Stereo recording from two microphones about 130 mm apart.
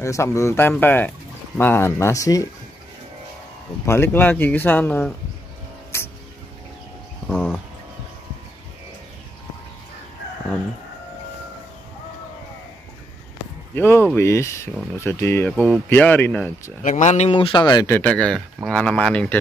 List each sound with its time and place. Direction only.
0.0 s speech: 20° left (ahead or behind)
3.8 s speech: 20° left (ahead or behind)
7.2 s a sound: 15° left (ahead or behind)
13.7 s speech: 15° left (ahead or behind)
16.8 s speech: 65° left (ahead or behind)
17.3 s speech: 40° left (ahead or behind)
18.0 s speech: 10° left (ahead or behind)